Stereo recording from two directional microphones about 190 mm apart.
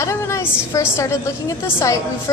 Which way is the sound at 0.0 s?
15° left (ahead or behind).